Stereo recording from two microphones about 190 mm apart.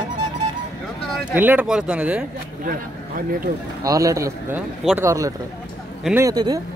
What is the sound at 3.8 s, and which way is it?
A man's voice, 15° right (ahead or behind).